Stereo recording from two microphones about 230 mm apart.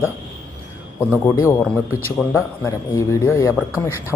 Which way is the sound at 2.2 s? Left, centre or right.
Centre.